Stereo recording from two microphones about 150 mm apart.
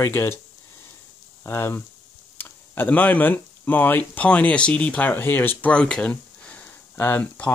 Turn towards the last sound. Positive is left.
turn(degrees=10)  # may be behind; listen again after turning